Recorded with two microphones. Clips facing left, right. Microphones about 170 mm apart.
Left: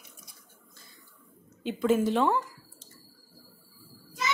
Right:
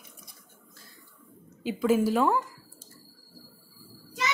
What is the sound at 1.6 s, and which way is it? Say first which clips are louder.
Speech: right 1 dB; 5° right (ahead or behind).